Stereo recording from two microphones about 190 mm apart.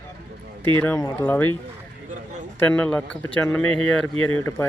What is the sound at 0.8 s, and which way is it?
Speech, 15° left (ahead or behind).